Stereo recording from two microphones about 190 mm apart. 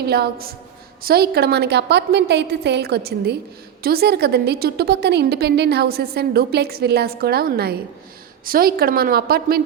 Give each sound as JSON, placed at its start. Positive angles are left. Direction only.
{"t": 0.0, "sound": "a woman's voice", "side_deg": -55}